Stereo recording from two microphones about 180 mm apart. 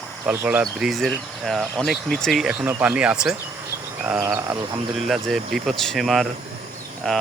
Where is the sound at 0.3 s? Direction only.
10° right (ahead or behind).